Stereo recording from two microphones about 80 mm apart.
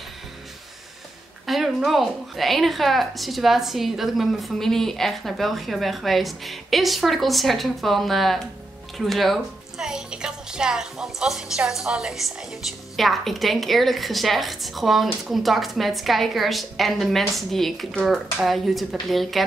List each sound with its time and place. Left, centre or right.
1.4 s a woman's voice: centre